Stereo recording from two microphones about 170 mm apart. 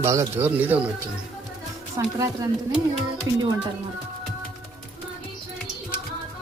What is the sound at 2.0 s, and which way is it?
Speech, 20° right (ahead or behind).